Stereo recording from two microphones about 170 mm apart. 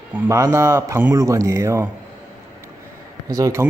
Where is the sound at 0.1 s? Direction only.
15° right (ahead or behind).